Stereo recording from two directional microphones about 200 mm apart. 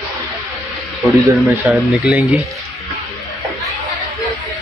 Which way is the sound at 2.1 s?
Centre (ahead or behind).